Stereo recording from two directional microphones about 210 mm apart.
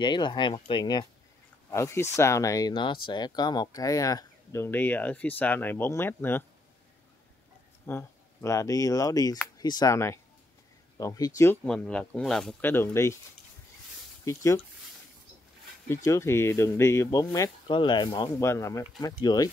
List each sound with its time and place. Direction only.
0.0 s speech: 20° left (ahead or behind)
7.8 s speech: 10° left (ahead or behind)
11.6 s speech: 5° left (ahead or behind)
14.2 s speech: 15° left (ahead or behind)
15.9 s speech: 15° left (ahead or behind)